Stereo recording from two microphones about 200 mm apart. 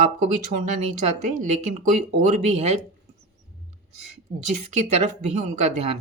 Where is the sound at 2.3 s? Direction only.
35° right (ahead or behind).